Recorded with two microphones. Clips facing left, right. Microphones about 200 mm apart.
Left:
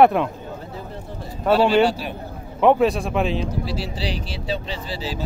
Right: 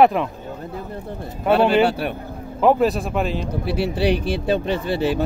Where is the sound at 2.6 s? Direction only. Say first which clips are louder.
Even; centre (ahead or behind).